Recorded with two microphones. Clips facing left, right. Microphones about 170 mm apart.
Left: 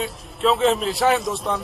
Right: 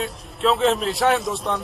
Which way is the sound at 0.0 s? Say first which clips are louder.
Even; centre (ahead or behind).